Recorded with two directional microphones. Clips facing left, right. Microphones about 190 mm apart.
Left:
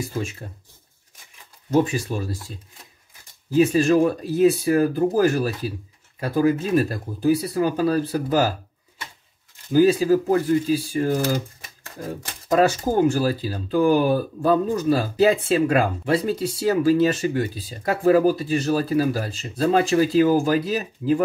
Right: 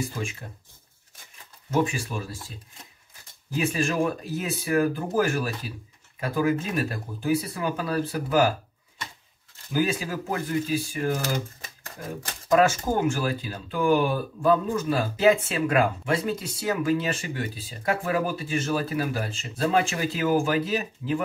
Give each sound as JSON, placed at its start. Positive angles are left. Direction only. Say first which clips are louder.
{"t": 1.7, "sound": "speech", "louder": "left 5 dB", "side_deg": 35}
{"t": 3.5, "sound": "speech", "louder": "left 9 dB", "side_deg": 40}
{"t": 9.7, "sound": "speech", "louder": "left 10 dB", "side_deg": 35}